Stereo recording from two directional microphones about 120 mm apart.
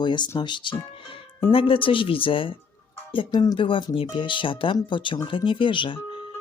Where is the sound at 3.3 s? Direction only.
30° left (ahead or behind).